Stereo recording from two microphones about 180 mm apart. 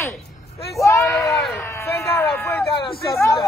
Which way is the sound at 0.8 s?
15° left (ahead or behind).